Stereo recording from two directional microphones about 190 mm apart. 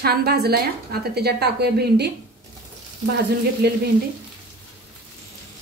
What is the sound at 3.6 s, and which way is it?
Speech, 60° right (ahead or behind).